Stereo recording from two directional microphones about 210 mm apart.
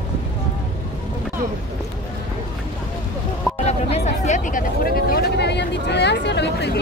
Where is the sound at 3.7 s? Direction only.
30° left (ahead or behind).